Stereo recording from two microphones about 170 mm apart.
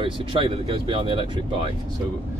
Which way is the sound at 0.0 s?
30° right (ahead or behind).